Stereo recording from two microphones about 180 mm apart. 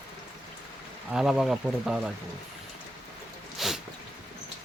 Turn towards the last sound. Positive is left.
turn(degrees=0)  # may be behind; listen again after turning